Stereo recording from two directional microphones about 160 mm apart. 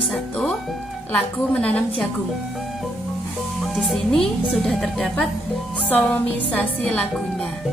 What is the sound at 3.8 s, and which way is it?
A woman's voice, centre (ahead or behind).